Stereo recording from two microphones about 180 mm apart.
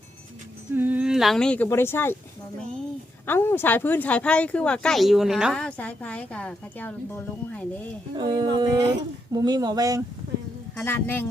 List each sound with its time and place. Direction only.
0.7 s speech: 10° right (ahead or behind); by 2.1 s 10° left (ahead or behind)
3.2 s speech: 10° left (ahead or behind)
8.1 s speech: 25° right (ahead or behind)
10.8 s speech: 10° left (ahead or behind)